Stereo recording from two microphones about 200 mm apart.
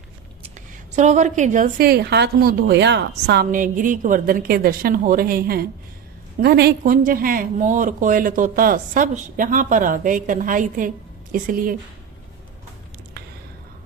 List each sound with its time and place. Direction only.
0.9 s a woman's voice: 35° right (ahead or behind)